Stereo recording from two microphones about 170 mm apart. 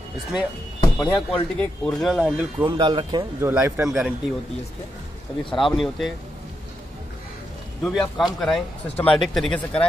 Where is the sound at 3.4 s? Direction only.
10° right (ahead or behind).